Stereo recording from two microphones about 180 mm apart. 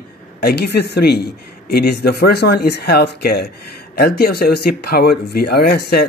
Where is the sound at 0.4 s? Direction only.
60° left (ahead or behind).